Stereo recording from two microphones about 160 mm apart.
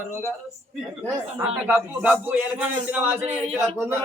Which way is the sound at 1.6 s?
10° right (ahead or behind).